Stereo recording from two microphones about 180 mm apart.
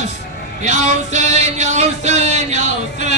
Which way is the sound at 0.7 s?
40° right (ahead or behind).